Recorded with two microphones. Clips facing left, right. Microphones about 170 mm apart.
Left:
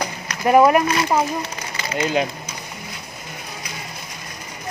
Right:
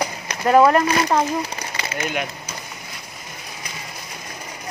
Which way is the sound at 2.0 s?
30° left (ahead or behind).